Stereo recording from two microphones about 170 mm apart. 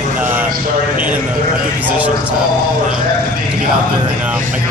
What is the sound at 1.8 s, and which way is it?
Speech, 10° right (ahead or behind).